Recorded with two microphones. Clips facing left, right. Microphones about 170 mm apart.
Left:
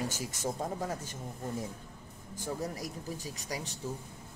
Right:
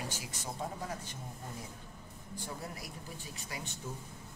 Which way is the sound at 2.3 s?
40° left (ahead or behind).